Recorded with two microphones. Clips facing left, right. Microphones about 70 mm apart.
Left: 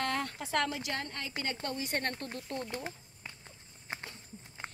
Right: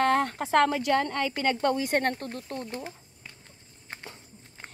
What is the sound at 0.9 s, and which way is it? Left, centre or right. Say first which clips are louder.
Speech: right 13 dB; right.